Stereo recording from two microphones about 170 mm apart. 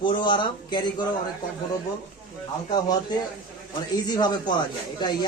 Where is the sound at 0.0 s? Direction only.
25° left (ahead or behind).